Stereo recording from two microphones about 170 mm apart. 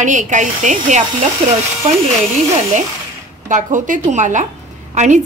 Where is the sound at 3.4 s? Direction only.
50° right (ahead or behind).